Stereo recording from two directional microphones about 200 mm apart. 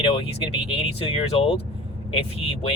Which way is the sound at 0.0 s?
30° left (ahead or behind).